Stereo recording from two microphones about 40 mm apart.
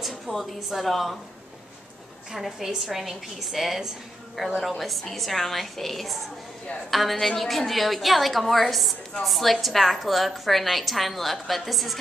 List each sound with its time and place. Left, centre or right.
0.0 s a woman's voice: centre
2.3 s a woman's voice: centre